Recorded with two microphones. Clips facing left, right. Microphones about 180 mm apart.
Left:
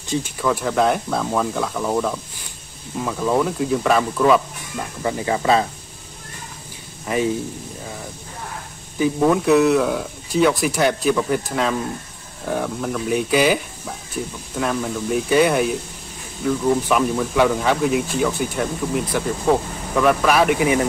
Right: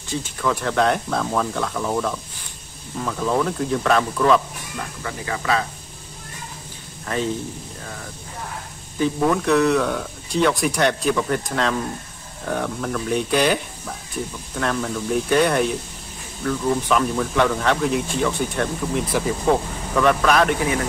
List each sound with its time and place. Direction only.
0.1 s speech: 10° left (ahead or behind)
5.0 s speech: 25° left (ahead or behind)
7.1 s speech: 10° left (ahead or behind)
8.9 s speech: 10° left (ahead or behind)